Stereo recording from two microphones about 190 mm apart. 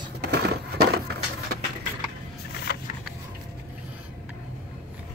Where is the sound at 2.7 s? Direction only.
55° left (ahead or behind).